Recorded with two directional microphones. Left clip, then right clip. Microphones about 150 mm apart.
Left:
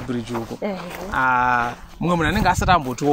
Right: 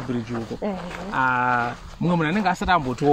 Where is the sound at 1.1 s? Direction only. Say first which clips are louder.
Left 3 dB; 20° right (ahead or behind).